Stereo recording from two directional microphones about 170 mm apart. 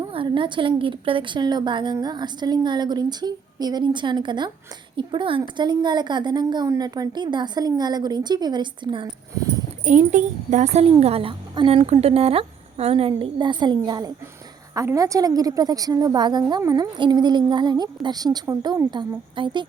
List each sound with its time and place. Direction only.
0.0 s a woman's voice: 30° right (ahead or behind)
9.8 s a child's voice: 45° right (ahead or behind); by 19.6 s 25° right (ahead or behind)